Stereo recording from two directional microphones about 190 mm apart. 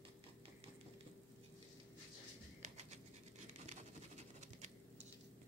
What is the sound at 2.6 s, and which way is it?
Bird, 35° right (ahead or behind).